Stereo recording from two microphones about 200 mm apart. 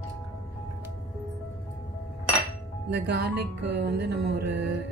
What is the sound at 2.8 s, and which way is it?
Speech, 60° right (ahead or behind).